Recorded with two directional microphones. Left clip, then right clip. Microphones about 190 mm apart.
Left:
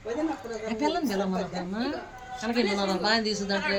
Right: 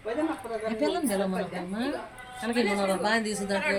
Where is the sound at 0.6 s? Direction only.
5° right (ahead or behind).